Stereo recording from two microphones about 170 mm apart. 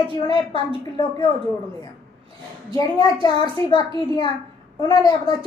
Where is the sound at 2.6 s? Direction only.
25° left (ahead or behind).